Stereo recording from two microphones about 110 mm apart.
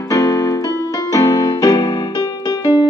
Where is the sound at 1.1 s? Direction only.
35° left (ahead or behind).